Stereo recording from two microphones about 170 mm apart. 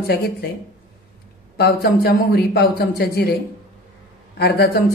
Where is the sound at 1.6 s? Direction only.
65° left (ahead or behind).